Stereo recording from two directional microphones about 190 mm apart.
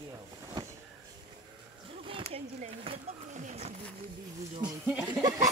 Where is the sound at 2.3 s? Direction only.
30° right (ahead or behind).